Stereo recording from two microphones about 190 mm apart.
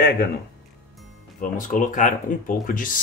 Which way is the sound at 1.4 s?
45° left (ahead or behind).